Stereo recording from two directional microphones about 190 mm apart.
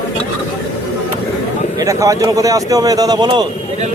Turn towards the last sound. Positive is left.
turn(degrees=-20)  # may be behind; listen again after turning